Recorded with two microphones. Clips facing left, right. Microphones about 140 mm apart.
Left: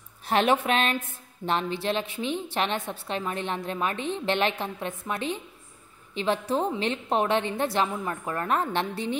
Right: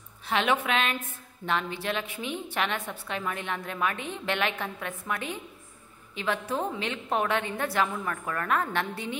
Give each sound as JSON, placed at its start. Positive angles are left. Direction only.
{"t": 0.2, "sound": "a woman's voice", "side_deg": 40}